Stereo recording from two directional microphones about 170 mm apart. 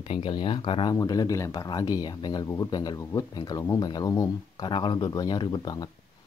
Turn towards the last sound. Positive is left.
turn(degrees=25)  # may be behind; listen again after turning